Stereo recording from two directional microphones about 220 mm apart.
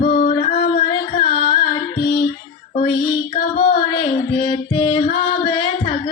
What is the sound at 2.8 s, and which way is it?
Music, 20° left (ahead or behind).